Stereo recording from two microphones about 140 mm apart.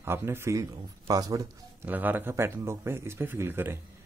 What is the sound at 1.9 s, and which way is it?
A man's voice, 10° right (ahead or behind).